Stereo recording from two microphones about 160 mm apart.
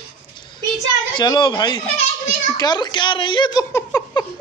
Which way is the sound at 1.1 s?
30° left (ahead or behind).